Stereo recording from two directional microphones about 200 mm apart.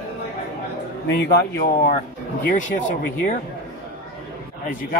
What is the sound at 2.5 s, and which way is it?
Speech, 40° left (ahead or behind).